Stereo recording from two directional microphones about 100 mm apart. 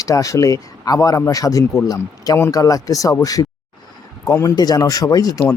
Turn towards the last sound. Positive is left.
turn(degrees=35)  # may be behind; listen again after turning